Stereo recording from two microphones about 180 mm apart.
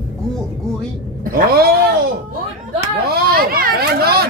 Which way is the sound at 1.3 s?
55° right (ahead or behind).